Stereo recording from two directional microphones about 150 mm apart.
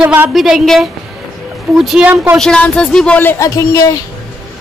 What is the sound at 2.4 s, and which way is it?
Speech, 5° left (ahead or behind).